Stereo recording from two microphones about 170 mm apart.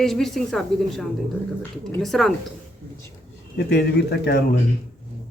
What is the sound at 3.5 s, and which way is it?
Speech, 70° left (ahead or behind).